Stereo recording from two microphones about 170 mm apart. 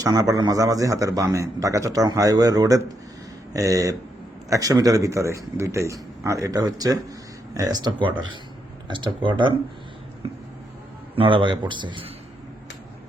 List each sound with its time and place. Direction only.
0.0 s a man's voice: 20° right (ahead or behind)
11.1 s a man's voice: 30° right (ahead or behind)